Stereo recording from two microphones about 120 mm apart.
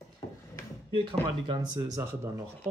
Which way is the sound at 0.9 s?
45° right (ahead or behind).